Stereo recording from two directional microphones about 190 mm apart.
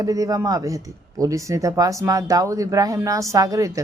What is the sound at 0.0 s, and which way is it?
A woman's voice, 20° right (ahead or behind).